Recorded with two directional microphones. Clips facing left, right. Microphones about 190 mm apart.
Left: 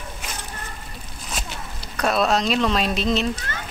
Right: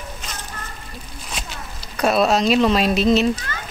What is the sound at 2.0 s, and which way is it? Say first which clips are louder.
Speech: right 4 dB; 5° right (ahead or behind).